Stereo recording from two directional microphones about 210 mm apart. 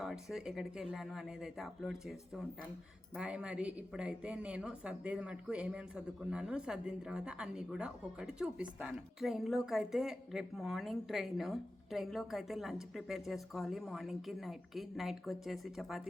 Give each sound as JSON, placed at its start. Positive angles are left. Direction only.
{"t": 0.0, "sound": "a woman's voice", "side_deg": 0}